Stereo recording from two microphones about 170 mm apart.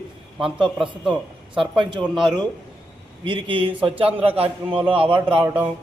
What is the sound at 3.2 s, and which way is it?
Speech, 30° right (ahead or behind).